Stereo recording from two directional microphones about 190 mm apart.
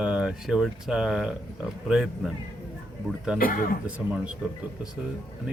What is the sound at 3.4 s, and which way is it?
Speech, 50° left (ahead or behind).